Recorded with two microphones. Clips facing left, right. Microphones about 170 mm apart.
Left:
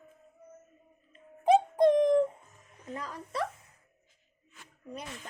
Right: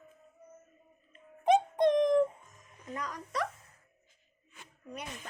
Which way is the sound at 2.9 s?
30° left (ahead or behind).